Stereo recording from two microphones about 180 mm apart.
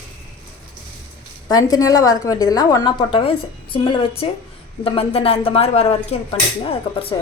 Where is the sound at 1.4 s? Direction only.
20° left (ahead or behind).